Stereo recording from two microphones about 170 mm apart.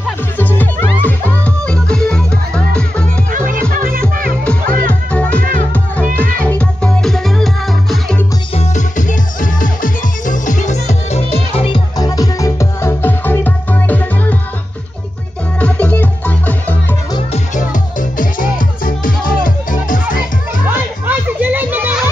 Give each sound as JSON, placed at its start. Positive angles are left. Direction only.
{"t": 0.4, "sound": "music", "side_deg": 10}
{"t": 3.3, "sound": "music", "side_deg": -50}
{"t": 4.5, "sound": "music", "side_deg": 10}
{"t": 6.4, "sound": "music", "side_deg": 5}
{"t": 8.5, "sound": "music", "side_deg": 45}
{"t": 12.0, "sound": "music", "side_deg": 20}
{"t": 15.6, "sound": "music", "side_deg": 10}
{"t": 17.3, "sound": "music", "side_deg": 45}
{"t": 20.6, "sound": "children playing", "side_deg": -10}